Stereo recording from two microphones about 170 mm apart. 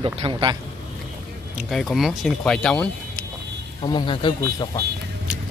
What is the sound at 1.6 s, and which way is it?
Speech, centre (ahead or behind).